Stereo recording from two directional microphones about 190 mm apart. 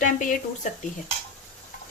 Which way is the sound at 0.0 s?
45° left (ahead or behind).